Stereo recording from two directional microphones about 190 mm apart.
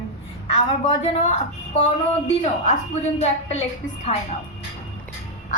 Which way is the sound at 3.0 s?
35° left (ahead or behind).